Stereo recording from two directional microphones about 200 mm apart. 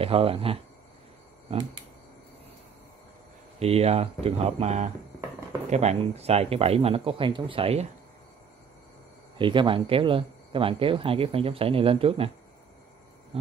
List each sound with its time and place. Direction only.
0.0 s speech: 30° right (ahead or behind)
3.5 s speech: 30° right (ahead or behind)
9.4 s speech: 25° right (ahead or behind)
13.3 s a sound: 30° right (ahead or behind)